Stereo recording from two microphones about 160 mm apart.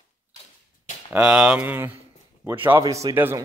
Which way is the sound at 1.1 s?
5° right (ahead or behind).